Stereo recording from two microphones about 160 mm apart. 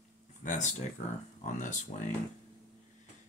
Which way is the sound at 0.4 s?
50° left (ahead or behind).